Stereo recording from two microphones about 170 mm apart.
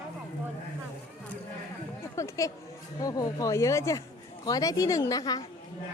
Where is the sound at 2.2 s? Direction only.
20° left (ahead or behind).